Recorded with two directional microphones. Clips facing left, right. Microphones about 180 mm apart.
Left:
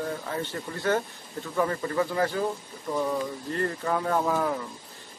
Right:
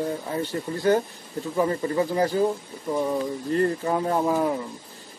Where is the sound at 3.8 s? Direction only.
20° right (ahead or behind).